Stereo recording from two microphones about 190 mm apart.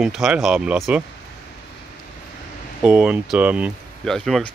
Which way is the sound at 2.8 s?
10° right (ahead or behind).